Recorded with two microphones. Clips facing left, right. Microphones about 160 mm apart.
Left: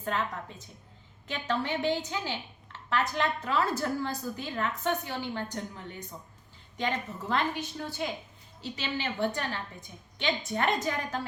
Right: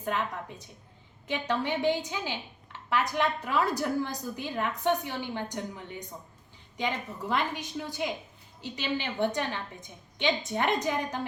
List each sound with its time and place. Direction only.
0.0 s a woman's voice: 15° right (ahead or behind)
1.3 s a woman's voice: 15° right (ahead or behind)
6.7 s a woman's voice: 15° right (ahead or behind)